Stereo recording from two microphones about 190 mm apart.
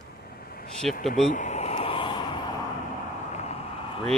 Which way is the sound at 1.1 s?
40° left (ahead or behind).